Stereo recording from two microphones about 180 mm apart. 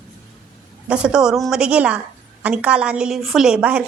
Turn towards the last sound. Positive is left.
turn(degrees=-5)  # may be behind; listen again after turning